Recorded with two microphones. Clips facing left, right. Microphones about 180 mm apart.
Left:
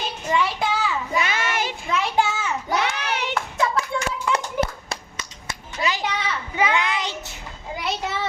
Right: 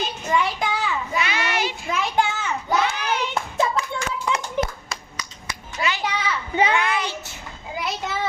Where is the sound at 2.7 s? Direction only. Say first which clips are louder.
Right 3 dB; 70° left (ahead or behind).